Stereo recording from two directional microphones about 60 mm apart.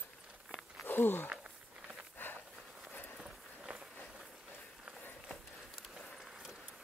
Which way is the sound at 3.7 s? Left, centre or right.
Right.